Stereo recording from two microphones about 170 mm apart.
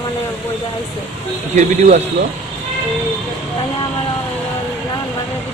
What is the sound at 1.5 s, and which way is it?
Speech, 45° right (ahead or behind).